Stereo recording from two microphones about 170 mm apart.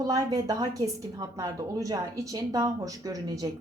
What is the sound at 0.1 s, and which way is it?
A woman's voice, 20° right (ahead or behind).